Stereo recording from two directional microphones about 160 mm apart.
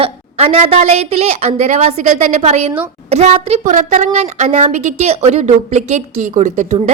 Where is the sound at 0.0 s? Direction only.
40° right (ahead or behind).